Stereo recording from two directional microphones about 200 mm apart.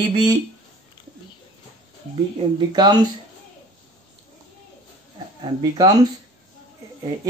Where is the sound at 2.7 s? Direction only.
20° right (ahead or behind).